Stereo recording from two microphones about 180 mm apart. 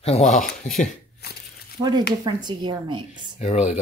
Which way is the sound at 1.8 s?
25° right (ahead or behind).